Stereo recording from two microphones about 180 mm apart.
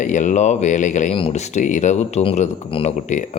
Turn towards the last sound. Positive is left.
turn(degrees=40)  # may be behind; listen again after turning